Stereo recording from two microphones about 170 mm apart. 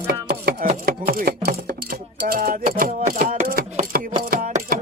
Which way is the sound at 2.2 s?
60° right (ahead or behind).